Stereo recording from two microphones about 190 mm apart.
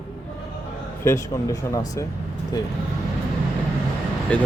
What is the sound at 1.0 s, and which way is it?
Speech, 15° left (ahead or behind).